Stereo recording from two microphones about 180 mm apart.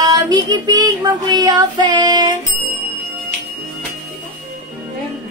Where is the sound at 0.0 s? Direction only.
20° right (ahead or behind).